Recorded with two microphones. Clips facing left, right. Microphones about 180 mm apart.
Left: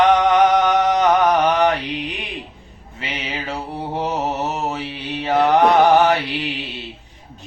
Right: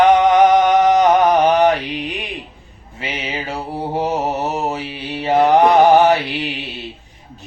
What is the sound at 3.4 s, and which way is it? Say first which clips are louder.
Mantra: right 2 dB; 20° right (ahead or behind).